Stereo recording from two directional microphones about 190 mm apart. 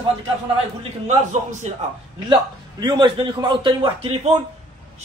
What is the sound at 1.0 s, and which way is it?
Speech, 35° right (ahead or behind).